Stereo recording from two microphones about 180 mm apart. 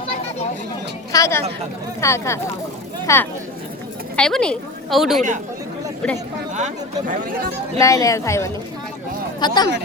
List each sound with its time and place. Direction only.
1.1 s speech: 15° left (ahead or behind)
4.2 s a woman's voice: 5° left (ahead or behind)
6.5 s speech: 40° right (ahead or behind)
7.8 s speech: 20° left (ahead or behind)